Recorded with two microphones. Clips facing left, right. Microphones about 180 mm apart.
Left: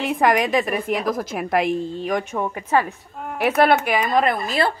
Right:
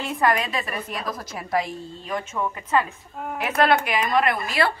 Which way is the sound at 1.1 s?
60° left (ahead or behind).